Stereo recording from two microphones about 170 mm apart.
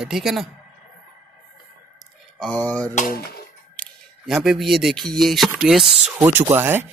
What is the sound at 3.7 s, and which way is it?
Speech, 5° left (ahead or behind).